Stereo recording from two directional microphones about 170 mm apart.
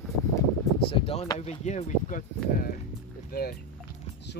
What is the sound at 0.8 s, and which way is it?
Speech, 35° left (ahead or behind).